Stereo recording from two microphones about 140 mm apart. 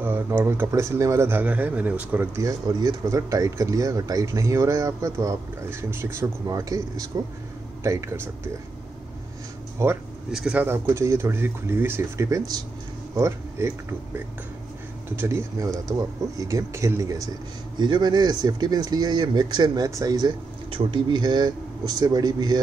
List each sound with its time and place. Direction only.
0.0 s a man's voice: 15° right (ahead or behind)
2.4 s speech: 25° right (ahead or behind)
9.8 s speech: 20° right (ahead or behind)
10.3 s speech: 5° right (ahead or behind); by 22.6 s 30° right (ahead or behind)